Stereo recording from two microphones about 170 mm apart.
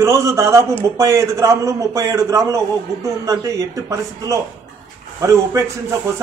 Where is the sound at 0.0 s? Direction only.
15° right (ahead or behind).